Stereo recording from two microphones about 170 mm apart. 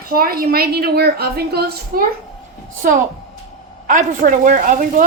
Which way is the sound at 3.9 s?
50° right (ahead or behind).